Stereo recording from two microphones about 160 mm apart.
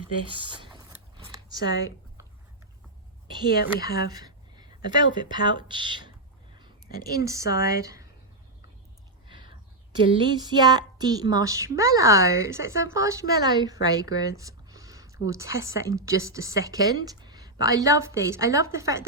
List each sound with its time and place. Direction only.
0.3 s a sound: 30° right (ahead or behind)
3.5 s speech: 75° left (ahead or behind)
4.1 s speech: 25° right (ahead or behind)
7.4 s speech: 80° left
7.8 s a woman's voice: 20° right (ahead or behind)
9.2 s a sound: 30° right (ahead or behind)
10.0 s a woman's voice: 30° right (ahead or behind)